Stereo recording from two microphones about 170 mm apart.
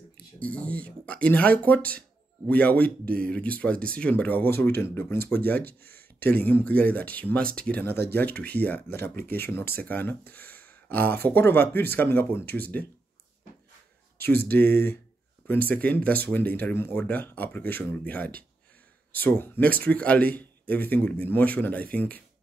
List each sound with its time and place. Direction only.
0.4 s speech: 10° left (ahead or behind)
14.5 s speech: 10° left (ahead or behind)